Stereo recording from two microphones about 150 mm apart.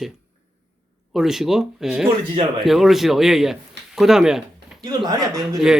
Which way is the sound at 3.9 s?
Centre (ahead or behind).